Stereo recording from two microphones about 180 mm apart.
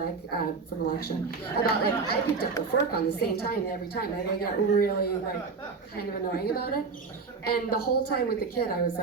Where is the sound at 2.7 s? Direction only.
65° left (ahead or behind).